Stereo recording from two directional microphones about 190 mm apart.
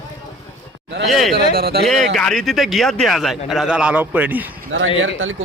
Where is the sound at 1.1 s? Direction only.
Centre (ahead or behind).